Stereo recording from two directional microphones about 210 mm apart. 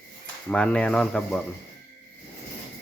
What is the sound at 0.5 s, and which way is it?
Speech, 5° left (ahead or behind).